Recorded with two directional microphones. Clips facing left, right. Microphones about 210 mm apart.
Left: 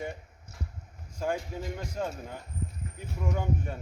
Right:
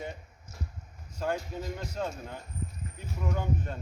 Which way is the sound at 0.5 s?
65° left (ahead or behind).